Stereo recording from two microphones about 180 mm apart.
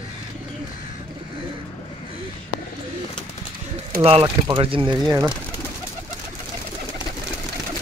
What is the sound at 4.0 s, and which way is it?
Speech, 30° right (ahead or behind).